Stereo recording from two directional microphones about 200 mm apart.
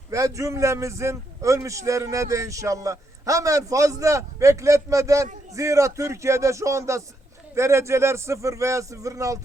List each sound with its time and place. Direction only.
0.1 s a man's voice: 15° right (ahead or behind)